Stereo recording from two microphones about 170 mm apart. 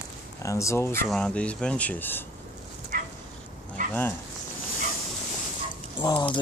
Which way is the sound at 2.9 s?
55° right (ahead or behind).